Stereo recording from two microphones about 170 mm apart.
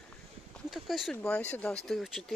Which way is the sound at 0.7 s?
Centre (ahead or behind).